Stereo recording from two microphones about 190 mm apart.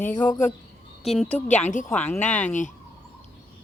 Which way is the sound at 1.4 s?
40° left (ahead or behind).